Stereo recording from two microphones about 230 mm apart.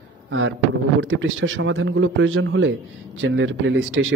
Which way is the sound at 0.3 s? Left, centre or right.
Right.